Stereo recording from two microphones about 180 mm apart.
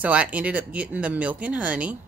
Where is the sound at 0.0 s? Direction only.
5° right (ahead or behind).